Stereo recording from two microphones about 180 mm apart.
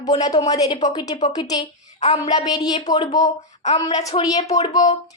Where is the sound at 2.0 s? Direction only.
40° left (ahead or behind).